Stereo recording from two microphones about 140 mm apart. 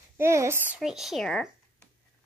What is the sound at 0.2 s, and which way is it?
Speech, 20° right (ahead or behind).